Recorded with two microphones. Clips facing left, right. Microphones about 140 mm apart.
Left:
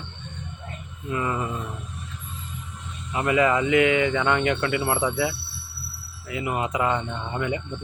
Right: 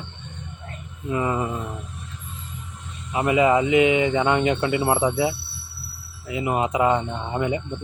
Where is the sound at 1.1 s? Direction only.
20° right (ahead or behind).